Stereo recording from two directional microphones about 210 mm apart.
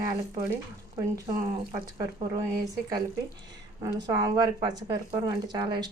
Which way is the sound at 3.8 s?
20° right (ahead or behind).